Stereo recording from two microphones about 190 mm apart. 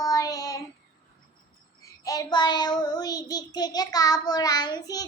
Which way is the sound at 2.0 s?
20° left (ahead or behind).